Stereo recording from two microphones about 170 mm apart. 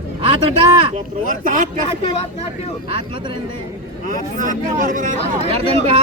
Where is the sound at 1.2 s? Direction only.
50° right (ahead or behind).